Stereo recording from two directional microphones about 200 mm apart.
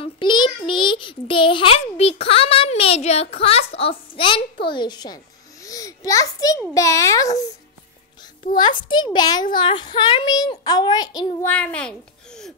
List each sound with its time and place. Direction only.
0.0 s a child's voice: 20° left (ahead or behind)
8.5 s a child's voice: 25° left (ahead or behind)
11.4 s a child's voice: 5° left (ahead or behind)